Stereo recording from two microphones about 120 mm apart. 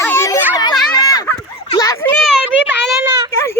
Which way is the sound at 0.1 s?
20° left (ahead or behind).